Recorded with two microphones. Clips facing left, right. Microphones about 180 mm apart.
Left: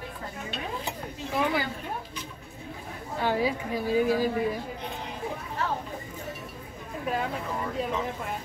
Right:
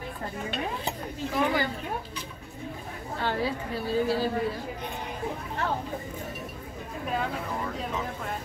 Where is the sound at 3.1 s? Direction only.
15° left (ahead or behind).